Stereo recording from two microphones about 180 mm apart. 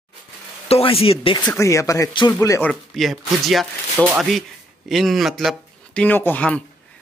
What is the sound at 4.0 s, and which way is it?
Speech, 15° right (ahead or behind).